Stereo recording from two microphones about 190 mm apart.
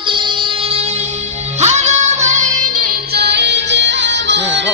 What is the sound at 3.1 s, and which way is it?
Music, 65° right (ahead or behind).